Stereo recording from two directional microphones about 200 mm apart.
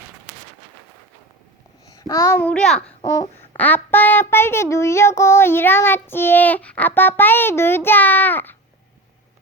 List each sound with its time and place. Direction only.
1.9 s child singing: 15° left (ahead or behind)
3.0 s babbling: 20° left (ahead or behind)
3.6 s child singing: 10° left (ahead or behind)